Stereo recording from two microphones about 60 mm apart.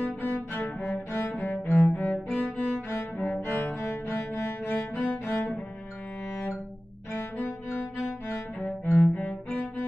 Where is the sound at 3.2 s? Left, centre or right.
Left.